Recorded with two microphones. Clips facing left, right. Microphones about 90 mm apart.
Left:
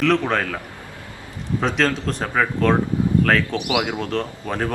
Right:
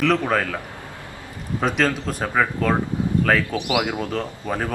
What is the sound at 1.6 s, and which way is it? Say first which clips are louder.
A man's voice: even; 5° right (ahead or behind).